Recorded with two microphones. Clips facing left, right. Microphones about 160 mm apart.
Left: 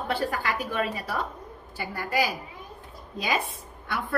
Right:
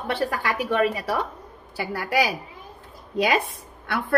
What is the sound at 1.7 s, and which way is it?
A woman's voice, 85° right.